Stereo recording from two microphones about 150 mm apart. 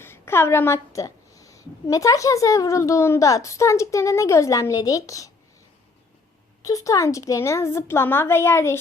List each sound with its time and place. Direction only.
0.0 s a woman's voice: 15° left (ahead or behind)
6.6 s a woman's voice: 25° left (ahead or behind)